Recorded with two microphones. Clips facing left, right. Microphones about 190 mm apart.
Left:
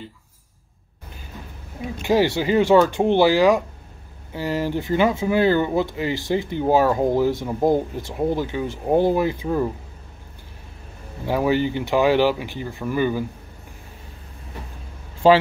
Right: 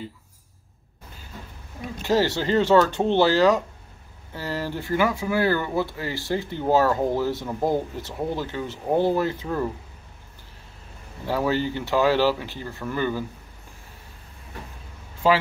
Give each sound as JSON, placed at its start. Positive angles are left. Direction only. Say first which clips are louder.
{"t": 2.0, "sound": "speech", "louder": "left 3 dB", "side_deg": 15}
{"t": 11.2, "sound": "speech", "louder": "left 4 dB", "side_deg": 15}
{"t": 15.2, "sound": "speech", "louder": "left 6 dB", "side_deg": 30}